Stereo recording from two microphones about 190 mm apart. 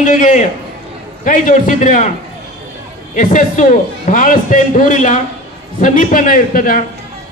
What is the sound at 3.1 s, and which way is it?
A woman's voice, 40° left (ahead or behind).